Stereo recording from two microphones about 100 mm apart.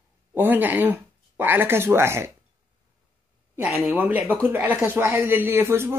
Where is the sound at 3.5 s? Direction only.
25° right (ahead or behind).